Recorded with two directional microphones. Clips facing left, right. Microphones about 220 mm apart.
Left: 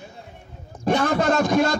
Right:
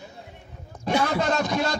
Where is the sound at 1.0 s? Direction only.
50° left (ahead or behind).